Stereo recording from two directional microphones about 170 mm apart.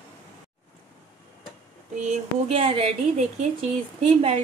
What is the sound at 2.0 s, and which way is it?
A woman's voice, 40° right (ahead or behind).